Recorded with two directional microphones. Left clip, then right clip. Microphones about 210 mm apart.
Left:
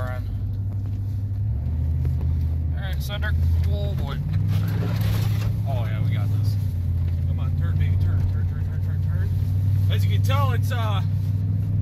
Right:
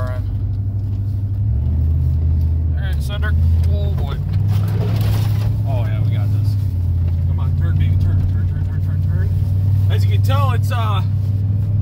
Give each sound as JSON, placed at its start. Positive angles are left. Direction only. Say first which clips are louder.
{"t": 3.1, "sound": "speech", "louder": "right 4 dB", "side_deg": 5}
{"t": 5.9, "sound": "speech", "louder": "right 4 dB", "side_deg": 5}
{"t": 9.8, "sound": "speech", "louder": "right 4 dB", "side_deg": -40}